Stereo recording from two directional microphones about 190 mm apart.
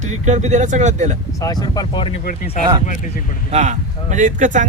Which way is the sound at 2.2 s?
45° left (ahead or behind).